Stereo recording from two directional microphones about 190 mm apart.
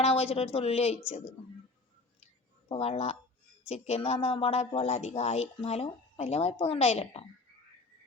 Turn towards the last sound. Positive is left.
turn(degrees=30)  # may be behind; listen again after turning